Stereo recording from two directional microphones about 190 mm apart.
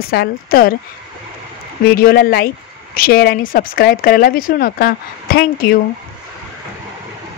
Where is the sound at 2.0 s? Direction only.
50° left (ahead or behind).